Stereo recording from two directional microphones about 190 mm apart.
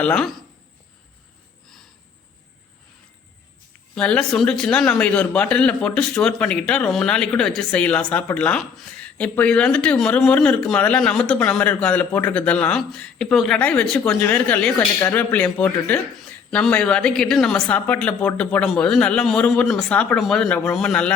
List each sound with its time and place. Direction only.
0.0 s a man's voice: 5° left (ahead or behind)
3.9 s a man's voice: 5° left (ahead or behind)